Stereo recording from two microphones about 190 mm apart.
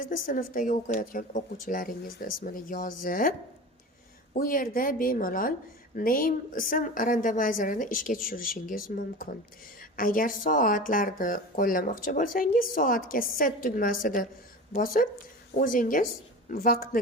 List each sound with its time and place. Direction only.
0.1 s speech: 45° left (ahead or behind)
4.4 s speech: 45° left (ahead or behind)